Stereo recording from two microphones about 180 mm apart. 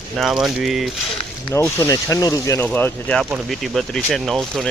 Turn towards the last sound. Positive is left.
turn(degrees=0)  # may be behind; listen again after turning